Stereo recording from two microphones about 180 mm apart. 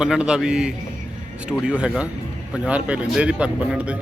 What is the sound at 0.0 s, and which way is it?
A man's voice, 5° right (ahead or behind).